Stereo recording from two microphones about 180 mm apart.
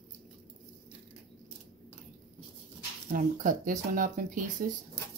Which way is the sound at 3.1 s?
45° right (ahead or behind).